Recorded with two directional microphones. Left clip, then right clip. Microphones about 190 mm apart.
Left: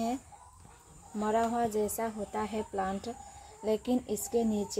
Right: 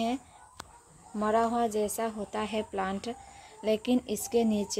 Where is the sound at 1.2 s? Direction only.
20° right (ahead or behind).